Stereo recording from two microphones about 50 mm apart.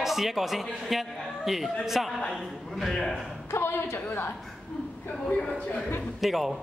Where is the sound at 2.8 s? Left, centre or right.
Centre.